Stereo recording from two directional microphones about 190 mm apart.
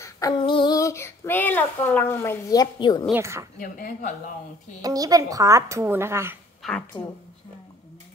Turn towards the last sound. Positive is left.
turn(degrees=5)  # may be behind; listen again after turning